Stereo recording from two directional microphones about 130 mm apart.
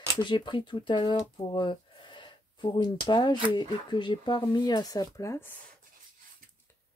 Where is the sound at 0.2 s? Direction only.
40° left (ahead or behind); by 5.5 s 25° left (ahead or behind).